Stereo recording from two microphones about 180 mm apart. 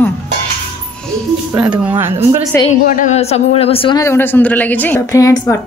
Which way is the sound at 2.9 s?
35° left (ahead or behind).